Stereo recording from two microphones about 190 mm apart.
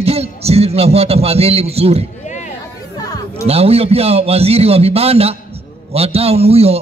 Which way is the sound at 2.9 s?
20° left (ahead or behind).